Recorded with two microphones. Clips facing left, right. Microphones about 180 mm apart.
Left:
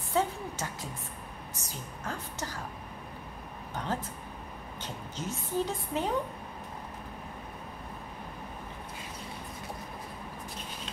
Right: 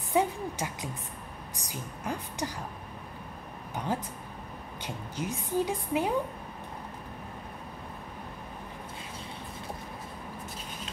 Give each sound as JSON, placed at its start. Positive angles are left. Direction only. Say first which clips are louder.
{"t": 0.1, "sound": "music", "louder": "right 3 dB", "side_deg": -15}
{"t": 1.6, "sound": "a woman's voice", "louder": "right 4 dB", "side_deg": -15}
{"t": 3.7, "sound": "a woman's voice", "louder": "right 2 dB", "side_deg": -10}